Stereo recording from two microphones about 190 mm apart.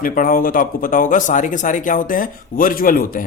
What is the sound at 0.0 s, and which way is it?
Speech, 45° left (ahead or behind).